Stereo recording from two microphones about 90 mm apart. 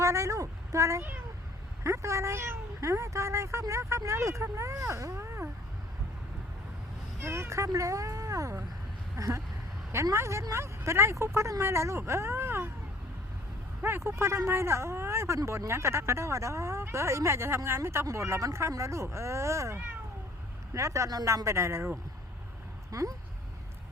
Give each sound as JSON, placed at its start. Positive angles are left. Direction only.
{"t": 0.0, "sound": "a sound", "side_deg": -35}
{"t": 1.8, "sound": "speech", "side_deg": -35}
{"t": 7.2, "sound": "speech", "side_deg": -30}
{"t": 13.8, "sound": "speech", "side_deg": -30}